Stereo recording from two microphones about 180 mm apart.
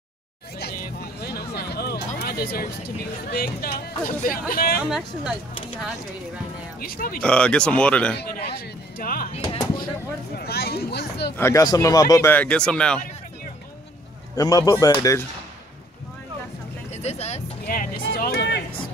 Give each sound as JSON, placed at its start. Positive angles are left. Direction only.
{"t": 0.6, "sound": "music", "side_deg": 60}
{"t": 3.3, "sound": "speech", "side_deg": 60}
{"t": 4.8, "sound": "speech", "side_deg": -5}
{"t": 6.8, "sound": "a man's voice", "side_deg": 55}
{"t": 7.2, "sound": "speech", "side_deg": 5}
{"t": 8.2, "sound": "a man's voice", "side_deg": 65}
{"t": 9.3, "sound": "speech", "side_deg": 30}
{"t": 10.3, "sound": "speech", "side_deg": 60}
{"t": 11.3, "sound": "speech", "side_deg": 15}
{"t": 14.3, "sound": "speech", "side_deg": 20}
{"t": 16.9, "sound": "speech", "side_deg": 35}
{"t": 17.6, "sound": "speech", "side_deg": 55}